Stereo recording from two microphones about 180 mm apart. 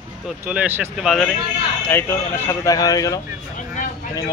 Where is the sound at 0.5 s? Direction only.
10° right (ahead or behind).